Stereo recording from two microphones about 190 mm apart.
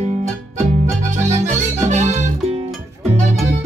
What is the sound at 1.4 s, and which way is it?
Music, 40° right (ahead or behind).